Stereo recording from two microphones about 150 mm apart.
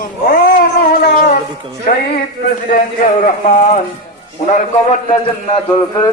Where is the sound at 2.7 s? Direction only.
65° left (ahead or behind).